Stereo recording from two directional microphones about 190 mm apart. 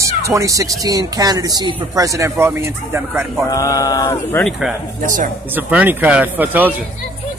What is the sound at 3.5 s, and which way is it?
Speech, 15° left (ahead or behind).